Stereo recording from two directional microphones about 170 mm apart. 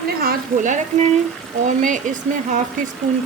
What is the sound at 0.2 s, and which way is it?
A woman's voice, 55° right (ahead or behind).